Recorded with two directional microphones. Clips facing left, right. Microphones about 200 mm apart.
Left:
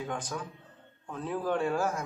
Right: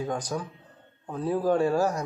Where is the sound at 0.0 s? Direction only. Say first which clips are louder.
Right 5 dB; 40° right (ahead or behind).